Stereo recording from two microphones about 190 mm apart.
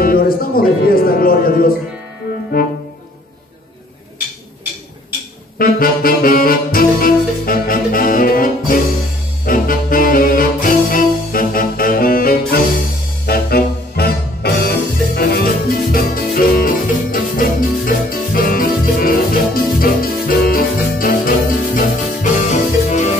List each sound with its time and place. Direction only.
0.0 s music: 50° left (ahead or behind)
2.6 s brass instrument: 50° left (ahead or behind)
5.6 s saxophone: 50° left (ahead or behind)
9.5 s music: 45° left (ahead or behind)